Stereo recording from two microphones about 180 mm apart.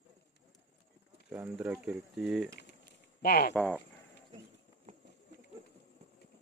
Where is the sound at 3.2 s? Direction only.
60° left (ahead or behind).